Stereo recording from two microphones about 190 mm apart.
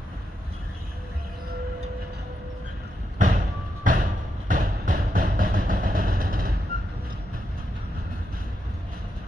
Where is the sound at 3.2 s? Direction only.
40° right (ahead or behind).